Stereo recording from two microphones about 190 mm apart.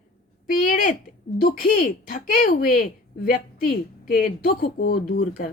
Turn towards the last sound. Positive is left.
turn(degrees=45)  # may be behind; listen again after turning